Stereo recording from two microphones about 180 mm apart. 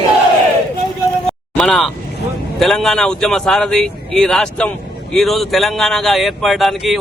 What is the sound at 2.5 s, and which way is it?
Speech, 5° left (ahead or behind).